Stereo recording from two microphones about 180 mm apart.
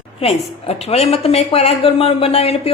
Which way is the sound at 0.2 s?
35° left (ahead or behind).